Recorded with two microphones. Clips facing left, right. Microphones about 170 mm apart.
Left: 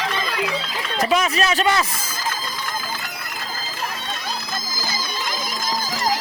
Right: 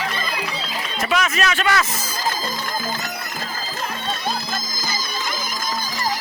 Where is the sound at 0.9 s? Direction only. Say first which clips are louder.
Left 2 dB; 35° left (ahead or behind).